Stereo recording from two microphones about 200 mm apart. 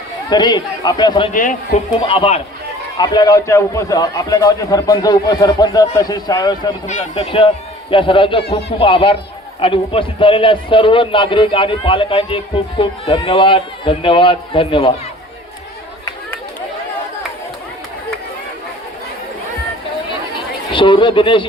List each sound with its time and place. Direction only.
0.3 s a man's voice: 20° left (ahead or behind)
1.3 s a man's voice: 40° left (ahead or behind)
2.0 s a man's voice: 30° left (ahead or behind)
6.8 s a man's voice: 35° left (ahead or behind)
20.7 s a man's voice: 25° left (ahead or behind)